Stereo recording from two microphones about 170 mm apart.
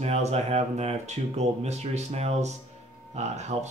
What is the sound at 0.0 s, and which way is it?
Speech, 40° right (ahead or behind).